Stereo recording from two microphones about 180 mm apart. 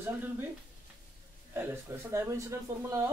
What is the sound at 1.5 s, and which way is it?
Speech, 15° right (ahead or behind).